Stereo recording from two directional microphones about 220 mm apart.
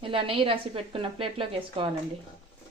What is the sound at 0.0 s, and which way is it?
A woman's voice, 25° right (ahead or behind).